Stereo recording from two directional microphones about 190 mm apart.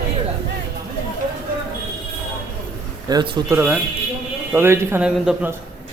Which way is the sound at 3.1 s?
20° right (ahead or behind).